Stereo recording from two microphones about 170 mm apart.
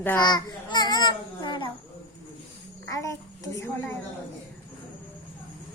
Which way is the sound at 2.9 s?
20° left (ahead or behind).